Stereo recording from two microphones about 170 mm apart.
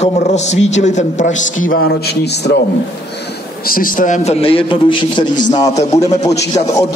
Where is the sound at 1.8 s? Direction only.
85° left.